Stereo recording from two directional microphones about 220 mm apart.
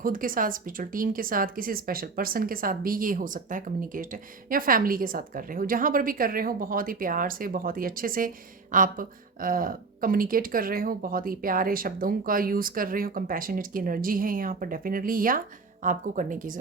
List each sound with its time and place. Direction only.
0.0 s a woman's voice: 40° right (ahead or behind)